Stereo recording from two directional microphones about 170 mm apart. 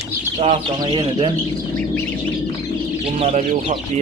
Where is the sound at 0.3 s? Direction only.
30° right (ahead or behind).